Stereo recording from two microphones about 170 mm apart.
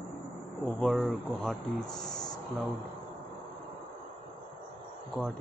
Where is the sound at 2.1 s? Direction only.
25° left (ahead or behind).